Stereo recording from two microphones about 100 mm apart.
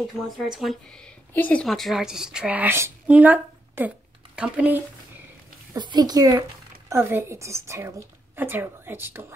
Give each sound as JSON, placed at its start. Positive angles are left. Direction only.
{"t": 0.0, "sound": "speech", "side_deg": 0}
{"t": 1.3, "sound": "a woman's voice", "side_deg": 20}
{"t": 1.6, "sound": "a woman's voice", "side_deg": 0}
{"t": 5.8, "sound": "speech", "side_deg": -45}
{"t": 6.9, "sound": "a woman's voice", "side_deg": -25}